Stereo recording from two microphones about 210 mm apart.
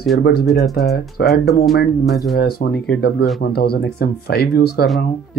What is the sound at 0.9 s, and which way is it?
Speech, 50° left (ahead or behind).